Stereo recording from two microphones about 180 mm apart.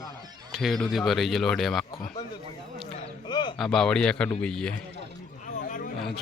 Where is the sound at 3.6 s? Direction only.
5° left (ahead or behind).